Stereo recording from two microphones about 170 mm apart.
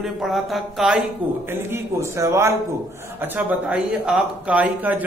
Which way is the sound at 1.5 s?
15° right (ahead or behind).